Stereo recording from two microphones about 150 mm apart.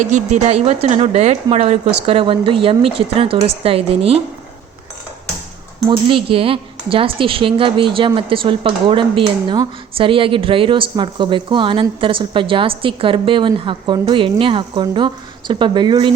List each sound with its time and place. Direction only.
0.0 s a woman's voice: 50° right (ahead or behind)
6.1 s a woman's voice: 35° right (ahead or behind)